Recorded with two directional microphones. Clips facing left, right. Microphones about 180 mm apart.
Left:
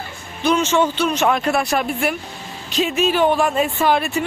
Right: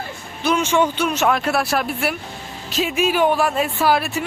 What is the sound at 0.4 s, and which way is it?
Speech, 10° right (ahead or behind).